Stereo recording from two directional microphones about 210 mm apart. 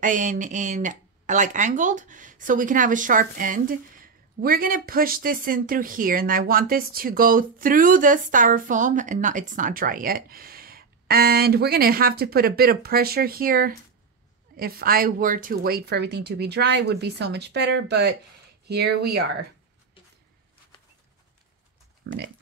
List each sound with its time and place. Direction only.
0.0 s a woman's voice: 40° right (ahead or behind); by 19.3 s 55° right (ahead or behind)
22.0 s speech: 55° right (ahead or behind)